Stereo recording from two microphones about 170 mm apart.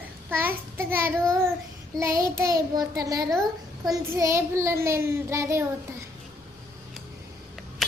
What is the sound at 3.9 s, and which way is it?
A child's voice, 20° right (ahead or behind).